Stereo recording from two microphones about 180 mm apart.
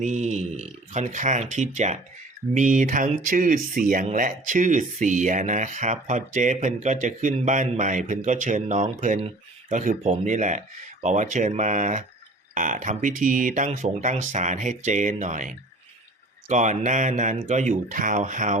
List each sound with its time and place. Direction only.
0.0 s speech: 40° right (ahead or behind)